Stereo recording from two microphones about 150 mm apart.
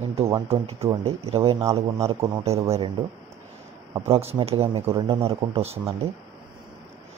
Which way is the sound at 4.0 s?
45° right (ahead or behind).